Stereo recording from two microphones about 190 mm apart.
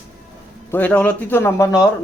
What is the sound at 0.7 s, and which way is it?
A man's voice, 10° left (ahead or behind).